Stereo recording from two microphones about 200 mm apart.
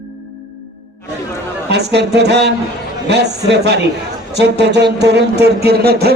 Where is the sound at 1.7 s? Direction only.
55° right (ahead or behind).